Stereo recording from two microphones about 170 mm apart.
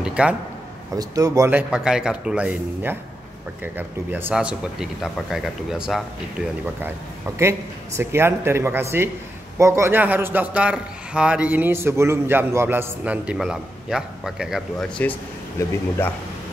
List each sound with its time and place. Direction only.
0.0 s a man's voice: 5° right (ahead or behind)
0.9 s a man's voice: 20° right (ahead or behind); by 6.0 s centre (ahead or behind)
7.3 s a man's voice: 15° right (ahead or behind); by 15.1 s 5° left (ahead or behind)
15.6 s speech: 15° left (ahead or behind)